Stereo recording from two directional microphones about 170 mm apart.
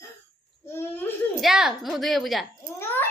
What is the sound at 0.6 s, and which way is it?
Speech, 15° left (ahead or behind).